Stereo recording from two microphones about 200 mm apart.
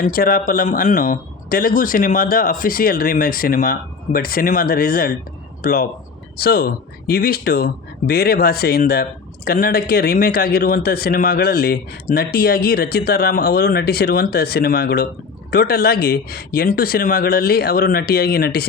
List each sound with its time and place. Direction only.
0.0 s speech: 45° left (ahead or behind)